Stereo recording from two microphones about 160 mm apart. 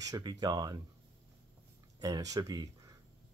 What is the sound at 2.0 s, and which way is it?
Speech, 20° right (ahead or behind).